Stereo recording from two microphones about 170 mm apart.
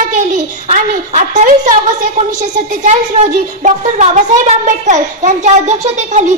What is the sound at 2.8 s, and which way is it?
Speech, 45° right (ahead or behind).